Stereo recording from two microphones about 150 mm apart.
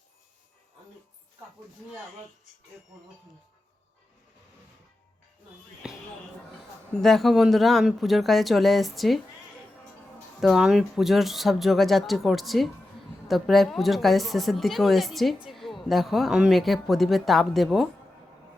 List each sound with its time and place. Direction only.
5.8 s basketball bounce: 5° right (ahead or behind)
7.0 s speech: centre (ahead or behind)
10.4 s speech: 5° right (ahead or behind)